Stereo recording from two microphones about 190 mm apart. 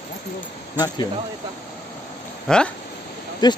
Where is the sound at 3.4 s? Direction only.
20° left (ahead or behind).